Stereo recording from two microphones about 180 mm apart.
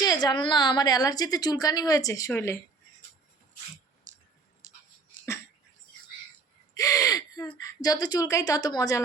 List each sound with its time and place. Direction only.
0.0 s a woman's voice: 20° left (ahead or behind)
4.1 s a sound: 40° right (ahead or behind)
4.6 s dog: 40° right (ahead or behind)
6.7 s gasp: 20° left (ahead or behind)
7.6 s a woman's voice: 20° left (ahead or behind)